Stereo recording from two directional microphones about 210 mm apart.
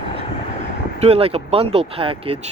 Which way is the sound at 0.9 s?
30° right (ahead or behind).